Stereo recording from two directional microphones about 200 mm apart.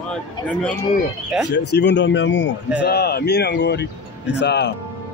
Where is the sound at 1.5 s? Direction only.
60° left (ahead or behind).